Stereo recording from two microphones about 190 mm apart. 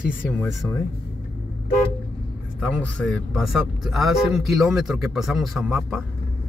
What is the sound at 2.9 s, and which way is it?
Speech, 5° left (ahead or behind).